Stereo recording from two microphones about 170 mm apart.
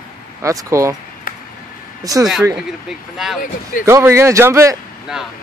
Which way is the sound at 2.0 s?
20° right (ahead or behind).